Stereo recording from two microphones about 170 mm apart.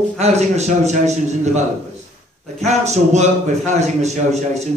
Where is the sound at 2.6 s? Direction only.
40° right (ahead or behind).